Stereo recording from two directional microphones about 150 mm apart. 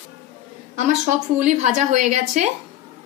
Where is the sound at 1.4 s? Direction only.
55° right (ahead or behind).